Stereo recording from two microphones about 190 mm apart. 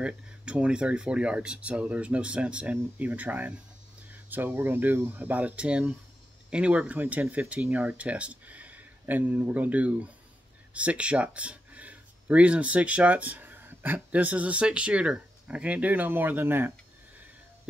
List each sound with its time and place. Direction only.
0.0 s speech: 5° right (ahead or behind)